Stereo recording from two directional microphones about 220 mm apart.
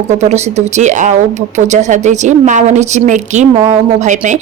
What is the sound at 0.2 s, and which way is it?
A woman's voice, 30° right (ahead or behind).